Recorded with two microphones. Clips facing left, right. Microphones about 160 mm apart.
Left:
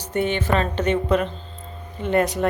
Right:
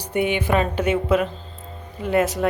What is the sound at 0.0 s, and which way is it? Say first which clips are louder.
A woman's voice: right 1 dB; 10° right (ahead or behind).